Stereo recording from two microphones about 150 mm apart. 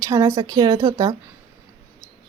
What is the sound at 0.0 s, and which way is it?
A woman's voice, 25° right (ahead or behind).